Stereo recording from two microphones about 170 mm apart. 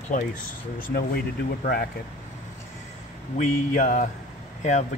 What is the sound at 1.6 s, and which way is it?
Speech, 60° left (ahead or behind).